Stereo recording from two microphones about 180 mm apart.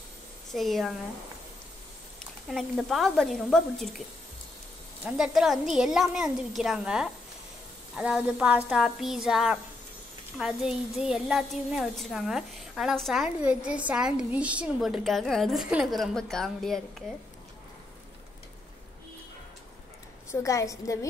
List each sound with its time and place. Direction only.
0.5 s a woman's voice: centre (ahead or behind)
2.5 s a woman's voice: centre (ahead or behind)
5.0 s a woman's voice: centre (ahead or behind)
20.2 s a woman's voice: 15° left (ahead or behind)